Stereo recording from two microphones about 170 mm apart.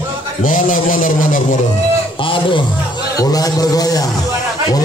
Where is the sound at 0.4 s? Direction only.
50° left (ahead or behind).